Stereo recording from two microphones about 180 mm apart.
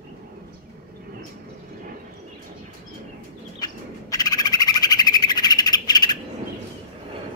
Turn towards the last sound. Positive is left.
turn(degrees=20)  # may be behind; listen again after turning